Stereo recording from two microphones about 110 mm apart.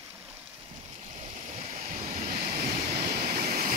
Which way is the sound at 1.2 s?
75° right (ahead or behind).